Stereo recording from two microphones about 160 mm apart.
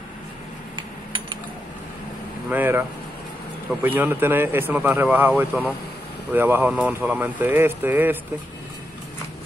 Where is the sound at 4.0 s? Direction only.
15° right (ahead or behind).